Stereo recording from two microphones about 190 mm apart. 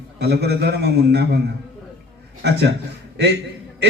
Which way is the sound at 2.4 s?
60° right (ahead or behind).